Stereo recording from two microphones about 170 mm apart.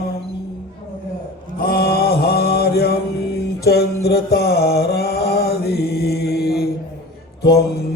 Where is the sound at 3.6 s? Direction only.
70° left (ahead or behind).